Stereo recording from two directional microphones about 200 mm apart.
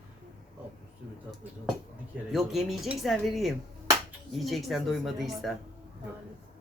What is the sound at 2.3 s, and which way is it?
Speech, centre (ahead or behind).